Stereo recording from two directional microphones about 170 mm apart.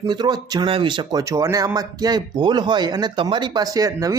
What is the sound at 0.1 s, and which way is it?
Speech, 25° right (ahead or behind).